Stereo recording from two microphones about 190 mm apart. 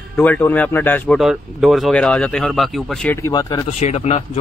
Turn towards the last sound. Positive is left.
turn(degrees=35)  # may be behind; listen again after turning